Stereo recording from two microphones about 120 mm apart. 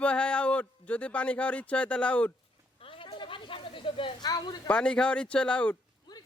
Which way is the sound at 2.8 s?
45° left (ahead or behind).